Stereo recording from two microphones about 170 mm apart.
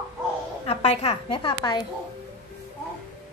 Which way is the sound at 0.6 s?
40° left (ahead or behind).